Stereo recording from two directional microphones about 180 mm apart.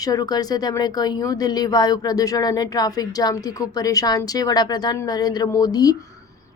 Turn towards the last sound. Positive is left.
turn(degrees=20)  # may be behind; listen again after turning